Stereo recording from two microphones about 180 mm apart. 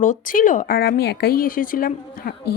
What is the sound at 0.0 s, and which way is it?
Speech, 45° left (ahead or behind).